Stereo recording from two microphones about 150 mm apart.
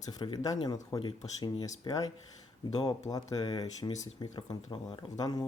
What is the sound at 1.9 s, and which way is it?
Speech, 30° left (ahead or behind).